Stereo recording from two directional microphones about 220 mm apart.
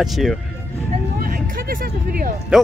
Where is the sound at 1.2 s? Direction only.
40° right (ahead or behind).